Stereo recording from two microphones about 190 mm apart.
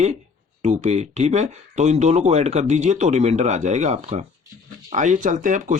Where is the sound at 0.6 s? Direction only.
35° right (ahead or behind).